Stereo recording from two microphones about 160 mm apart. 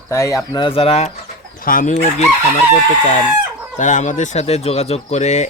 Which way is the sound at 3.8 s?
50° left (ahead or behind).